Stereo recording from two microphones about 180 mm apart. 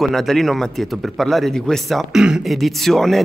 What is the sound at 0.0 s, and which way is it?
A man's voice, centre (ahead or behind).